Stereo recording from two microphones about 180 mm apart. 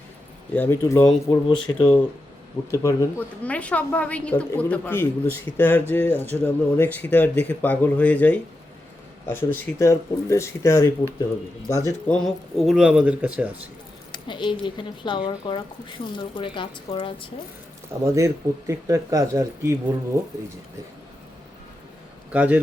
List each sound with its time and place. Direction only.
0.5 s a woman's voice: 10° left (ahead or behind); by 2.0 s 30° left (ahead or behind)
2.7 s a woman's voice: 15° left (ahead or behind)
12.1 s speech: centre (ahead or behind)
14.1 s a sound: 25° left (ahead or behind)
14.6 s speech: 25° left (ahead or behind)
18.0 s speech: 15° right (ahead or behind)
22.3 s a man's voice: 10° right (ahead or behind)